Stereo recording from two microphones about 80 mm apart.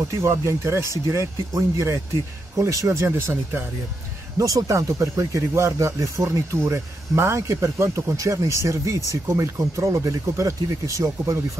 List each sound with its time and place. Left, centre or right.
0.2 s speech: right
4.4 s speech: right